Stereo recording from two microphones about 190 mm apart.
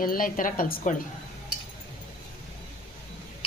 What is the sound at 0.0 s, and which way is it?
Speech, 45° left (ahead or behind).